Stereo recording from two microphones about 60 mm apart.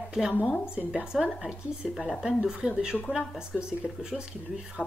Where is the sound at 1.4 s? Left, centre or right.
Centre.